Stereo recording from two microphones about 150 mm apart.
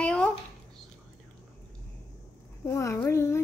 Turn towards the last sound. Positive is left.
turn(degrees=15)  # may be behind; listen again after turning